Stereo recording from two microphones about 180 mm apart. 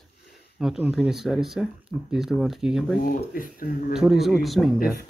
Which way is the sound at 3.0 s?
50° left (ahead or behind).